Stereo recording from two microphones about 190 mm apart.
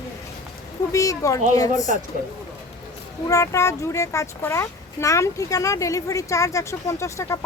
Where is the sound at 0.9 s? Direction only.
15° left (ahead or behind).